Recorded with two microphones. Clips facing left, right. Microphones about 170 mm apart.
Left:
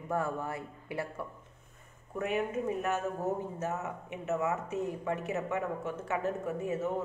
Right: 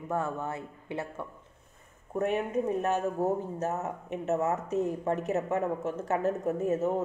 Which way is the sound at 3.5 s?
40° right (ahead or behind).